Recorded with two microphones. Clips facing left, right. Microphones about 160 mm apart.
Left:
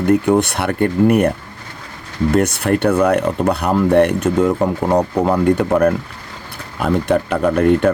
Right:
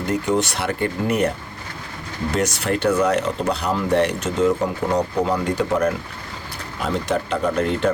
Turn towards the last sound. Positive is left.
turn(degrees=55)  # may be behind; listen again after turning